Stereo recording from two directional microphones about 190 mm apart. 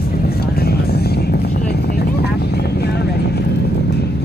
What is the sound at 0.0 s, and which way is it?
Vehicle, 55° left (ahead or behind).